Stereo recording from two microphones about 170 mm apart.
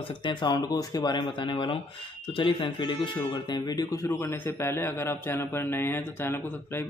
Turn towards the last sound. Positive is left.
turn(degrees=10)  # may be behind; listen again after turning